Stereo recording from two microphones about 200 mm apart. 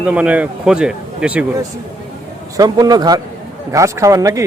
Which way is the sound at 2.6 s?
20° right (ahead or behind).